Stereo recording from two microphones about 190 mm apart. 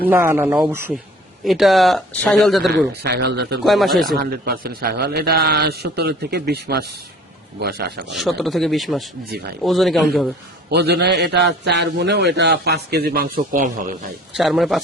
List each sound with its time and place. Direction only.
0.1 s speech: 10° right (ahead or behind)
3.0 s a man's voice: 60° right (ahead or behind)
3.6 s speech: centre (ahead or behind)
4.2 s a man's voice: 50° right (ahead or behind)
8.1 s speech: centre (ahead or behind)
10.7 s a man's voice: 60° right (ahead or behind); by 13.8 s 45° right (ahead or behind)
14.3 s speech: centre (ahead or behind)